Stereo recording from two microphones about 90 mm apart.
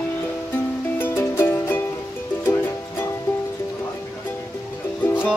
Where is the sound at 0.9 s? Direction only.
25° left (ahead or behind).